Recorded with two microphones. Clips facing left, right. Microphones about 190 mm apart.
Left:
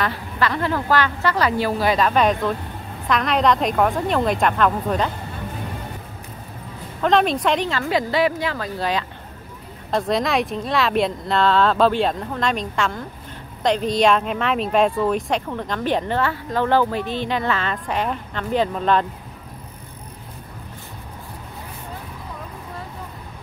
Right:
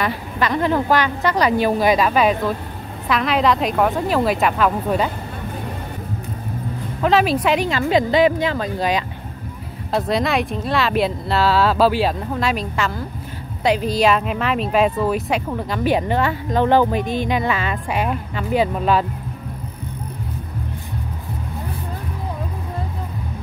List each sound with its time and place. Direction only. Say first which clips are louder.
0.0 s speech: right 1 dB; 15° right (ahead or behind)
7.0 s speech: right 1 dB; 5° right (ahead or behind)
9.8 s speech: right 1 dB; 5° right (ahead or behind)